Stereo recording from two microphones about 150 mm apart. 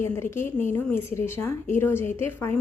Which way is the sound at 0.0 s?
15° left (ahead or behind).